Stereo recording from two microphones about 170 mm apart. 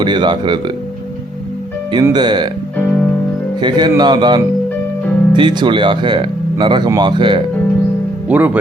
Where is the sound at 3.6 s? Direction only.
25° right (ahead or behind).